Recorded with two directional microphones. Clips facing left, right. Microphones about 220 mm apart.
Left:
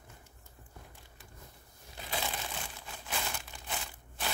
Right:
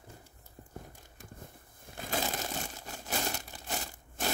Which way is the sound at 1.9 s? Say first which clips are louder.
Right 4 dB; 45° right (ahead or behind).